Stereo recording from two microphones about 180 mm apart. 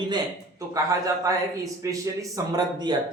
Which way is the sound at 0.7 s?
20° right (ahead or behind).